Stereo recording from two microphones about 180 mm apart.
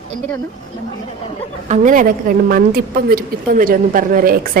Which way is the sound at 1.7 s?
45° right (ahead or behind).